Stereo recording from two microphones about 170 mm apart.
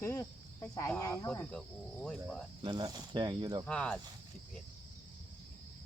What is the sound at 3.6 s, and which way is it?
Cricket, 5° left (ahead or behind).